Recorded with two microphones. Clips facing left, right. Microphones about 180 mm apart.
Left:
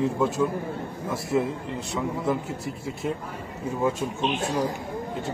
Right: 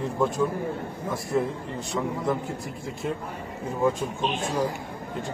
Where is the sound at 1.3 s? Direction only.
5° left (ahead or behind).